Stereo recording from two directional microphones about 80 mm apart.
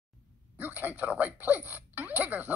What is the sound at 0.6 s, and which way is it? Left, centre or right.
Speech, right.